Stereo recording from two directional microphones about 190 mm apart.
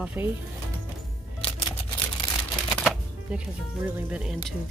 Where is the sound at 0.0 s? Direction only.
10° right (ahead or behind).